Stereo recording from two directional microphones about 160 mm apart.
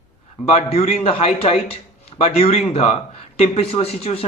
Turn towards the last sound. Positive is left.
turn(degrees=40)  # may be behind; listen again after turning